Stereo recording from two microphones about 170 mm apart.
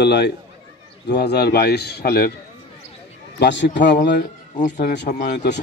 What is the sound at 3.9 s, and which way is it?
Speech, 55° left (ahead or behind).